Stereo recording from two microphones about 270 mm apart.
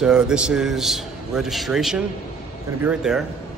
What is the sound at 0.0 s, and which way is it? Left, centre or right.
A man's voice, centre.